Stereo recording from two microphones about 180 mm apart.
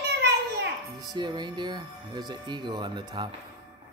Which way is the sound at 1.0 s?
25° right (ahead or behind).